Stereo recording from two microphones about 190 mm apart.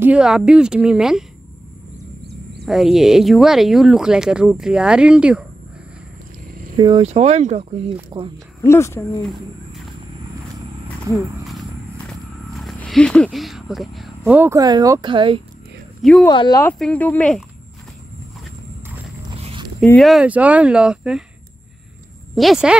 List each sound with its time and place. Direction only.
0.0 s speech: 5° right (ahead or behind)
2.6 s speech: centre (ahead or behind)
6.8 s speech: 25° right (ahead or behind)
7.1 s speech: 35° right (ahead or behind)
8.6 s speech: 15° left (ahead or behind)
12.5 s speech: centre (ahead or behind); by 15.4 s 25° right (ahead or behind)
16.0 s speech: 5° left (ahead or behind)
16.3 s speech: 20° left (ahead or behind)
16.7 s speech: 5° left (ahead or behind)
19.2 s walk: 30° right (ahead or behind)
19.8 s speech: 5° left (ahead or behind)
22.3 s speech: centre (ahead or behind)